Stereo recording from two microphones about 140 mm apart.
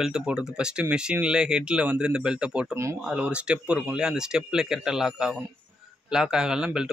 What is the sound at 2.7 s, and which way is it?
Speech, 20° right (ahead or behind).